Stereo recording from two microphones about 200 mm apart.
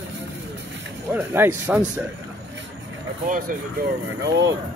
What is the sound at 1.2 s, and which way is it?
Speech, 10° right (ahead or behind).